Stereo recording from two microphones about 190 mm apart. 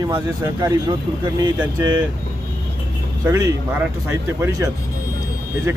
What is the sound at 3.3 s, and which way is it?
Speech, 15° right (ahead or behind).